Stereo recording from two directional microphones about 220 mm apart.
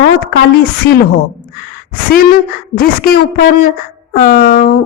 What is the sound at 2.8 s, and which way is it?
Speech, 45° left (ahead or behind).